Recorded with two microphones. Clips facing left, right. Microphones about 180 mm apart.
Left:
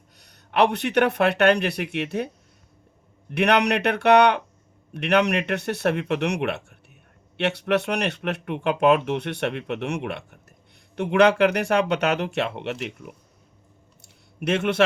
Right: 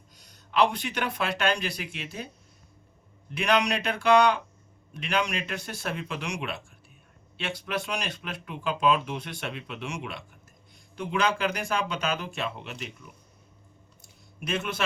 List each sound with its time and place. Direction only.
0.2 s speech: 65° left (ahead or behind)
14.3 s speech: 70° left (ahead or behind)